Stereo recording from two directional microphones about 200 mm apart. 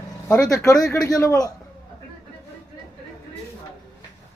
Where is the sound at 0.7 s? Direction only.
5° left (ahead or behind).